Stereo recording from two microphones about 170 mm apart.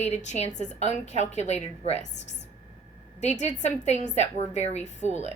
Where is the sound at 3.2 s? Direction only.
40° left (ahead or behind).